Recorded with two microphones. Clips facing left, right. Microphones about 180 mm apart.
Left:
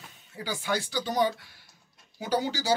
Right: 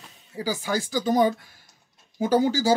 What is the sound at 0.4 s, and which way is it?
Speech, 40° right (ahead or behind).